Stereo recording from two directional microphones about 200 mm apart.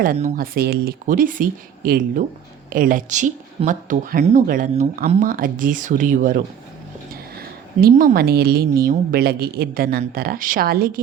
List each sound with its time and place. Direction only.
0.0 s speech: 45° right (ahead or behind)